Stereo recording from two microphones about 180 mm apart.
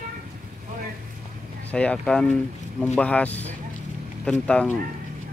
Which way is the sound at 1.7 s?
5° left (ahead or behind).